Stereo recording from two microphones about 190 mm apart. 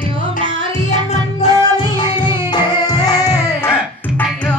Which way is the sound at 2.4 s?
20° left (ahead or behind).